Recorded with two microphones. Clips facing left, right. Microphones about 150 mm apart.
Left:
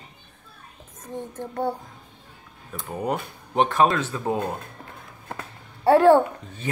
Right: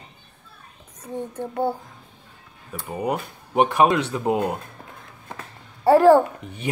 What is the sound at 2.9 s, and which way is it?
Speech, 10° right (ahead or behind).